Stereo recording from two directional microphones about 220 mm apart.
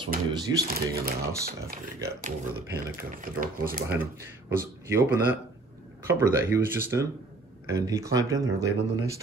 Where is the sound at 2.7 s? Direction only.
40° right (ahead or behind).